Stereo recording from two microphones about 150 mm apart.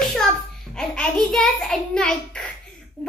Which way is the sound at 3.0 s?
10° left (ahead or behind).